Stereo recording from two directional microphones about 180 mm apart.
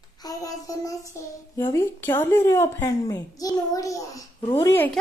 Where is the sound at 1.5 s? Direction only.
15° left (ahead or behind).